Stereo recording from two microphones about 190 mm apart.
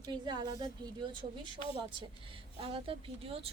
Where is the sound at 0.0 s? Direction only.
20° right (ahead or behind).